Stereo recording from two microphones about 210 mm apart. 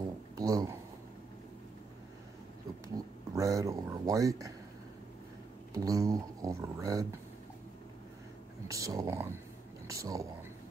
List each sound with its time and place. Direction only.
0.4 s speech: 15° right (ahead or behind)
3.3 s speech: 15° right (ahead or behind)
5.7 s speech: 15° right (ahead or behind)
8.6 s speech: 15° right (ahead or behind)